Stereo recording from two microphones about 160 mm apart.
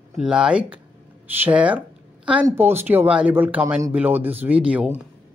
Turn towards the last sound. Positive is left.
turn(degrees=-10)  # may be behind; listen again after turning